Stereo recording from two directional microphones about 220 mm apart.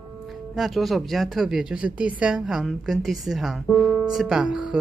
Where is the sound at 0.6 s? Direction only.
Centre (ahead or behind).